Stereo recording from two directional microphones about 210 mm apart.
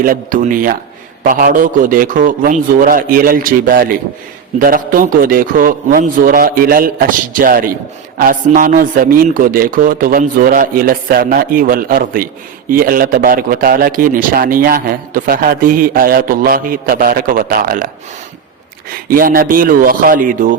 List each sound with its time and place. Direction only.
0.0 s a man's voice: 40° right (ahead or behind)